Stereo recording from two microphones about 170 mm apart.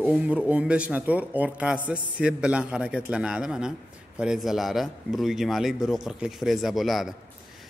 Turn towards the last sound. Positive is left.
turn(degrees=0)  # may be behind; listen again after turning